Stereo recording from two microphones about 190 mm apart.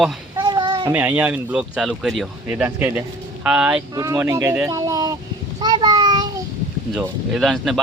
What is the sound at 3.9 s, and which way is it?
Speech, 15° right (ahead or behind).